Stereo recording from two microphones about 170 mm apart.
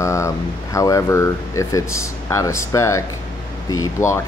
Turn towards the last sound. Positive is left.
turn(degrees=20)  # may be behind; listen again after turning